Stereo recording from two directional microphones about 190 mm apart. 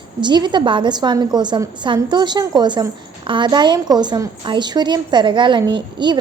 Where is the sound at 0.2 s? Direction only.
25° right (ahead or behind).